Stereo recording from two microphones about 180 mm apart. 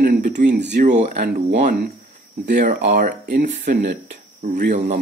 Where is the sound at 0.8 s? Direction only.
40° right (ahead or behind).